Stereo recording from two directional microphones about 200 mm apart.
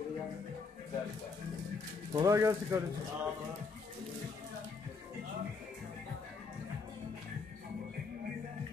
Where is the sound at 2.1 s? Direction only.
15° right (ahead or behind).